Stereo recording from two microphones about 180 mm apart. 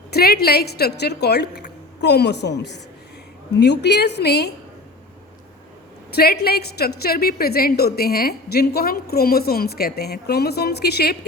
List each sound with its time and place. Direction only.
0.1 s a woman's voice: 60° left (ahead or behind)
6.1 s a woman's voice: 60° left (ahead or behind)